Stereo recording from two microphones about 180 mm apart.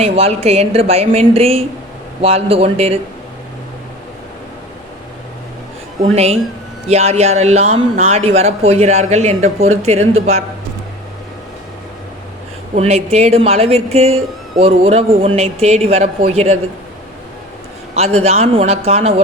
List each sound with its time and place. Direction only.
0.0 s speech: 35° right (ahead or behind)
6.0 s speech: 35° right (ahead or behind)
12.7 s speech: 35° right (ahead or behind)
17.9 s speech: 35° right (ahead or behind)